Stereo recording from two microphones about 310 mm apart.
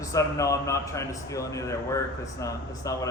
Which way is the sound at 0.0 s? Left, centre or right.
Centre.